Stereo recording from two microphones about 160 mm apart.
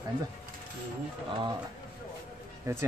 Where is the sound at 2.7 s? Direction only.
20° right (ahead or behind).